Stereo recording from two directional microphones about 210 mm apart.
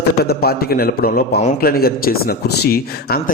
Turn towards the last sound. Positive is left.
turn(degrees=45)  # may be behind; listen again after turning